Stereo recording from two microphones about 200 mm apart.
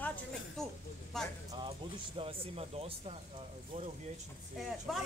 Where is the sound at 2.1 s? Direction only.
30° right (ahead or behind).